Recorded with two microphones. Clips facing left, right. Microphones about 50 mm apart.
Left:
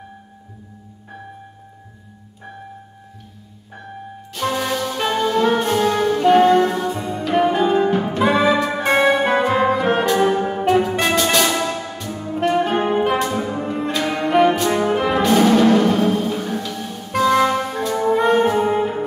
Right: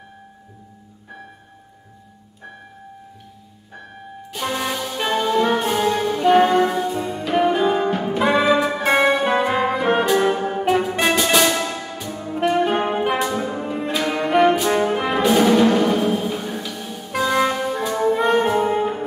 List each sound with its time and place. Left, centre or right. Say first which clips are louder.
4.3 s music: left 3 dB; centre
14.6 s brass instrument: even; centre
15.0 s music: left 1 dB; centre